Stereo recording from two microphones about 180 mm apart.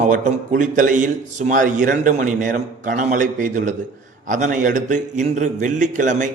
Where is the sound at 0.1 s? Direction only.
45° right (ahead or behind).